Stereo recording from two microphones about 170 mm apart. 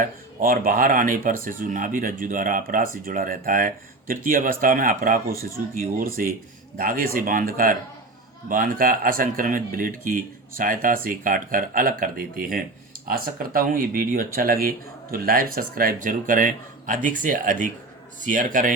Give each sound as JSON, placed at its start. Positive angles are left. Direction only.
{"t": 0.0, "sound": "speech", "side_deg": -55}